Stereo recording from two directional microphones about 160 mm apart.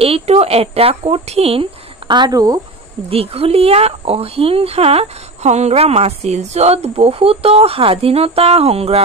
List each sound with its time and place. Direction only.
0.0 s a woman's voice: 40° right (ahead or behind); by 2.6 s 25° right (ahead or behind)
3.1 s a woman's voice: 35° right (ahead or behind)